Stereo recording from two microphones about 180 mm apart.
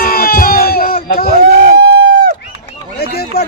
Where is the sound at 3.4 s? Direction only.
60° left (ahead or behind).